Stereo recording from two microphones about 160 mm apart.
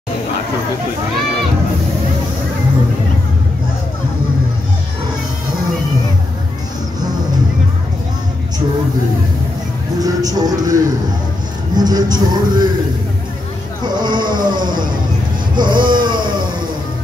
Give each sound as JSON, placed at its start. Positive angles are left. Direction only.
{"t": 9.9, "sound": "speech", "side_deg": -25}
{"t": 14.0, "sound": "speech", "side_deg": -30}
{"t": 15.5, "sound": "music", "side_deg": -30}